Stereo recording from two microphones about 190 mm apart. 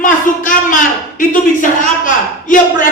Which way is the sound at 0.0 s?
45° left (ahead or behind).